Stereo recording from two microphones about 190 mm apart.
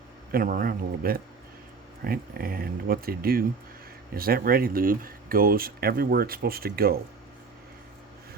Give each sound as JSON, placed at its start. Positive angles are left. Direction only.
{"t": 0.3, "sound": "speech", "side_deg": -50}